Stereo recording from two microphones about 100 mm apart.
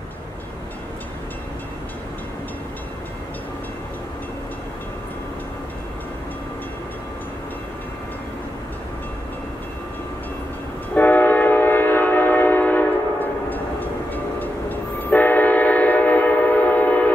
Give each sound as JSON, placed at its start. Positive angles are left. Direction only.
{"t": 11.0, "sound": "train", "side_deg": 20}